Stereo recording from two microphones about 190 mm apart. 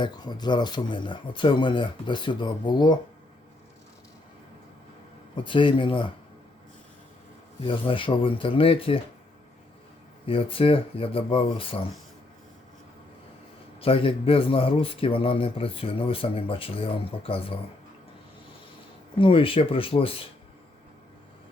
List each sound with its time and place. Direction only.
0.0 s speech: 20° left (ahead or behind)
5.5 s speech: 25° left (ahead or behind)
7.6 s speech: 25° left (ahead or behind)
10.2 s speech: 30° left (ahead or behind)
13.8 s speech: 30° left (ahead or behind)
19.2 s speech: 30° left (ahead or behind)